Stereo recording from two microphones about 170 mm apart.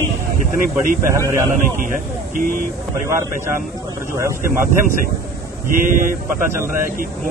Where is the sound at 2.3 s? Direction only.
55° right (ahead or behind).